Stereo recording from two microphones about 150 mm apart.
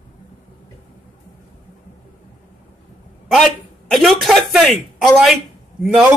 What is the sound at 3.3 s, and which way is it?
A woman's voice, centre (ahead or behind).